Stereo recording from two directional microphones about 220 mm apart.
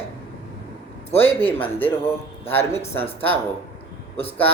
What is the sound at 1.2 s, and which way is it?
Speech, 10° left (ahead or behind).